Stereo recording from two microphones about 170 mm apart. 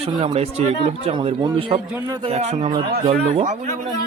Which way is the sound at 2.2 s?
35° right (ahead or behind).